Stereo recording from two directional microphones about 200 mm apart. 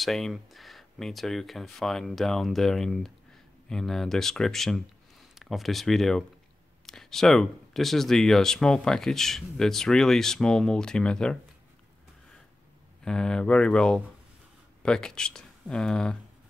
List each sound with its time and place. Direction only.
0.0 s speech: centre (ahead or behind)
13.0 s speech: 5° left (ahead or behind)